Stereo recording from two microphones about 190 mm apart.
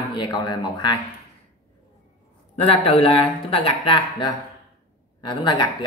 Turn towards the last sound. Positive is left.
turn(degrees=25)  # may be behind; listen again after turning